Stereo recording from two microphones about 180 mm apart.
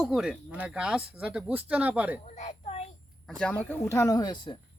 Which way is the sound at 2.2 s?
40° left (ahead or behind).